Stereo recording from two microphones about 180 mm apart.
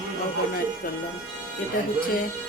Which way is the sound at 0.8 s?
55° left (ahead or behind).